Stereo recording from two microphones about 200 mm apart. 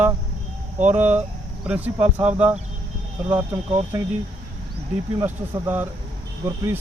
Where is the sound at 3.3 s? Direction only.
20° right (ahead or behind).